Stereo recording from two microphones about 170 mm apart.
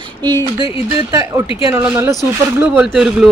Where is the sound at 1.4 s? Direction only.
30° left (ahead or behind).